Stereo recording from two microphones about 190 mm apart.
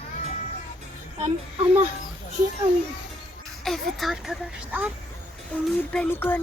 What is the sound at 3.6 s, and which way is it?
Speech, centre (ahead or behind).